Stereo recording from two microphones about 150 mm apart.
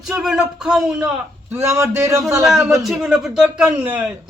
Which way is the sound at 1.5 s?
20° right (ahead or behind).